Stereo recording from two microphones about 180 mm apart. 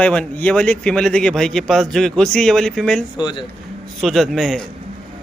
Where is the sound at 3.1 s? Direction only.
25° left (ahead or behind).